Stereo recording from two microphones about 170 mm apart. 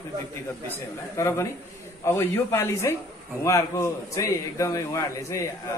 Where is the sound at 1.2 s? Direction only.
15° left (ahead or behind).